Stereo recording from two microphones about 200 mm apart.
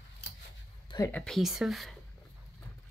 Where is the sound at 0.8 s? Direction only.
15° left (ahead or behind).